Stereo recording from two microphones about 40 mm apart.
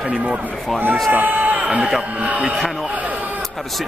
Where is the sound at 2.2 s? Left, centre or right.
Right.